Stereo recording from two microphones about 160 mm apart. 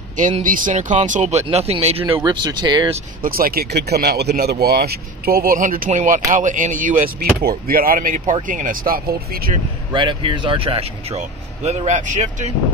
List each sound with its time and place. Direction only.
0.4 s speech: 55° right (ahead or behind); by 2.1 s 40° right (ahead or behind)
2.2 s speech: 25° right (ahead or behind)
3.2 s speech: 65° right (ahead or behind)
9.9 s speech: 30° right (ahead or behind); by 12.5 s 50° right (ahead or behind)